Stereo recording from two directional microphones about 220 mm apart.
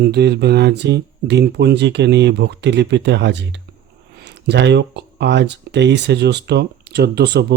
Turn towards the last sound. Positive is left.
turn(degrees=-50)  # may be behind; listen again after turning